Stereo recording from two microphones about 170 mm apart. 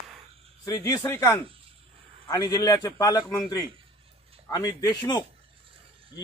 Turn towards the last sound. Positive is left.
turn(degrees=25)  # may be behind; listen again after turning